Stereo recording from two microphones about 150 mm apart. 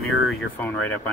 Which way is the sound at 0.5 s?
15° left (ahead or behind).